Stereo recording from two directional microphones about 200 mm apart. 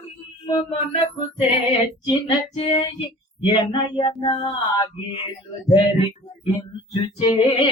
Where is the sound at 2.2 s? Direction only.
25° left (ahead or behind).